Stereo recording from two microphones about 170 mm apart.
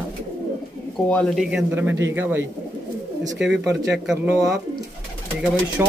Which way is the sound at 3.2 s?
90° right.